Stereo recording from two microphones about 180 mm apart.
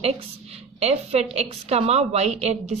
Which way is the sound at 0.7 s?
35° right (ahead or behind).